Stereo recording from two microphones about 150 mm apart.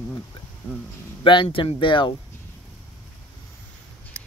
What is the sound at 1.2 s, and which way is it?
Speech, 35° left (ahead or behind).